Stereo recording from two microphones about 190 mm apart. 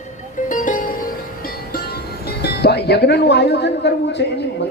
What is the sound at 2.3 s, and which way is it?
Speech, 60° left (ahead or behind).